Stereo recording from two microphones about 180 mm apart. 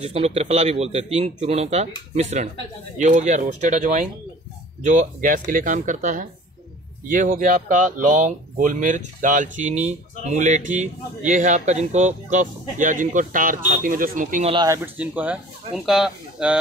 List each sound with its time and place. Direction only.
0.0 s speech: 35° right (ahead or behind)
14.5 s speech: 20° right (ahead or behind)
15.0 s speech: 5° right (ahead or behind)